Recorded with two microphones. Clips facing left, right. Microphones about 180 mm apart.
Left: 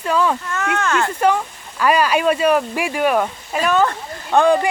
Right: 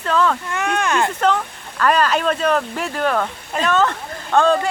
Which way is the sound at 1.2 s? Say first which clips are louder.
Left 1 dB; 10° left (ahead or behind).